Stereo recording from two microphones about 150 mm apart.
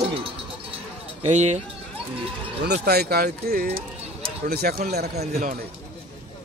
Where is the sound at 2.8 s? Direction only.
90° right.